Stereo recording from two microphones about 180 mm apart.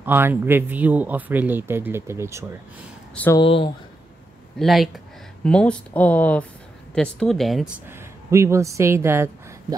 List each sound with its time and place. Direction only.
0.0 s speech: 10° right (ahead or behind)
3.3 s speech: 30° left (ahead or behind)
4.6 s speech: centre (ahead or behind)
7.9 s speech: 15° right (ahead or behind)